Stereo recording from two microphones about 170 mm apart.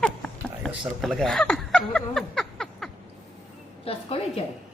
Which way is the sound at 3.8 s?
35° left (ahead or behind).